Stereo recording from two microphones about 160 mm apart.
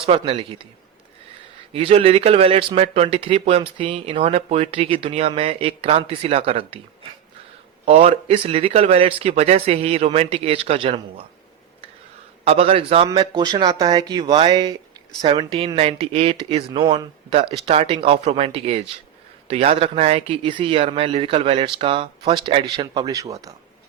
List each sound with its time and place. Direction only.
0.0 s speech: 35° right (ahead or behind)
1.7 s speech: 35° right (ahead or behind)
7.9 s speech: 40° right (ahead or behind)
12.5 s speech: 40° right (ahead or behind); by 23.6 s 20° right (ahead or behind)